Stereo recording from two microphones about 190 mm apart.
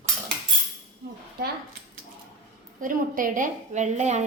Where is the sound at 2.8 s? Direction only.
45° right (ahead or behind).